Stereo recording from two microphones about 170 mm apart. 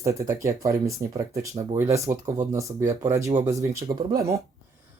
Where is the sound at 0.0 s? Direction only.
20° right (ahead or behind).